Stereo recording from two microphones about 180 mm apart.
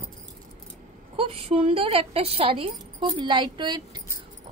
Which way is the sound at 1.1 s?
30° right (ahead or behind).